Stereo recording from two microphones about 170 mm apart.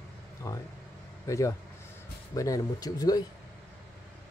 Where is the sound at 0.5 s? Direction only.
20° left (ahead or behind).